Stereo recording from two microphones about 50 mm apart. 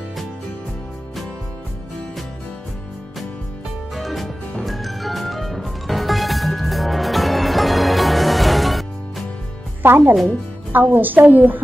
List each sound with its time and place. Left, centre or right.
3.9 s music: centre
9.8 s a woman's voice: right